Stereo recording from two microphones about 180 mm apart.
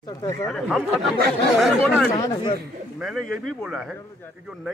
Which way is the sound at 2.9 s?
Centre (ahead or behind).